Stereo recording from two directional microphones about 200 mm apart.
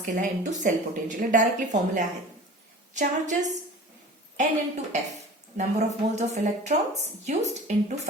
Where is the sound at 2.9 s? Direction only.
35° right (ahead or behind).